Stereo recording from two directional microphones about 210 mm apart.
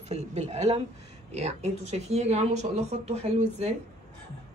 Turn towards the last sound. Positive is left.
turn(degrees=-30)  # may be behind; listen again after turning